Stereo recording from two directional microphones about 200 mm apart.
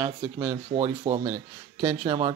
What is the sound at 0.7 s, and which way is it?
A man's voice, 25° right (ahead or behind).